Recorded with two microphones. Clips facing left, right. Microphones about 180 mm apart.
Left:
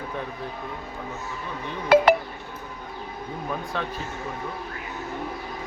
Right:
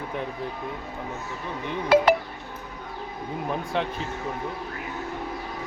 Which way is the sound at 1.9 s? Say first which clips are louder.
Left 2 dB; 55° left (ahead or behind).